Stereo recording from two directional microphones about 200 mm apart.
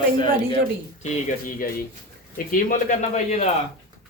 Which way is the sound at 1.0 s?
40° left (ahead or behind).